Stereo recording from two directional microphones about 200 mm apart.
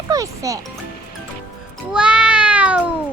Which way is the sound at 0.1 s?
15° right (ahead or behind).